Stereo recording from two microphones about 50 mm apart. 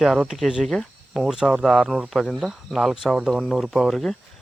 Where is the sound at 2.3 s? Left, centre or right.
Centre.